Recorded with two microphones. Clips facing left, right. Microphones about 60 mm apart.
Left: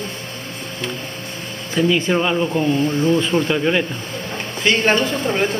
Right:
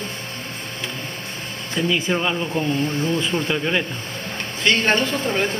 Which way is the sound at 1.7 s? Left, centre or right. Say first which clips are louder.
Left 5 dB; centre.